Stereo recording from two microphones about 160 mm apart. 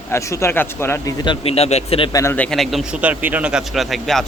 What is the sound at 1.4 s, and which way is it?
Speech, 40° left (ahead or behind).